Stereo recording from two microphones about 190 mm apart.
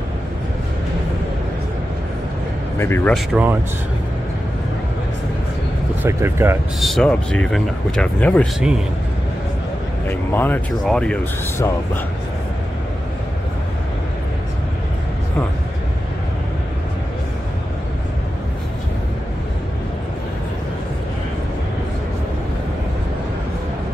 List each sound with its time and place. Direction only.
2.8 s speech: 10° left (ahead or behind)
3.1 s speech: centre (ahead or behind)
6.0 s speech: 15° right (ahead or behind)
6.8 s speech: centre (ahead or behind)
10.0 s speech: 10° left (ahead or behind)